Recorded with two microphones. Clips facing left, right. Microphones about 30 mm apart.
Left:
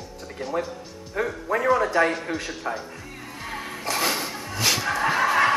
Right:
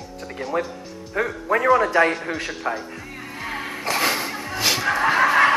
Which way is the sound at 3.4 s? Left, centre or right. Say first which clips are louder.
Right 4 dB; centre.